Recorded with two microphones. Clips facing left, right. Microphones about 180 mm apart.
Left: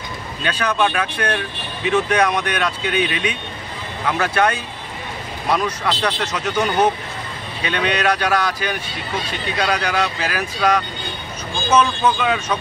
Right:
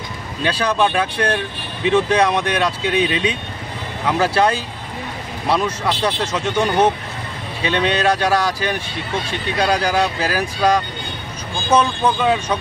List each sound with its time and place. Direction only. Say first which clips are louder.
0.4 s speech: right 2 dB; 30° right (ahead or behind)